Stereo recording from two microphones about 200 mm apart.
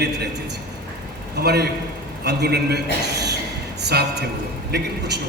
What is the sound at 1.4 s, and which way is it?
A man's voice, 55° right (ahead or behind).